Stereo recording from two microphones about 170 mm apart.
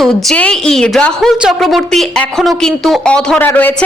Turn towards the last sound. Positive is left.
turn(degrees=10)  # may be behind; listen again after turning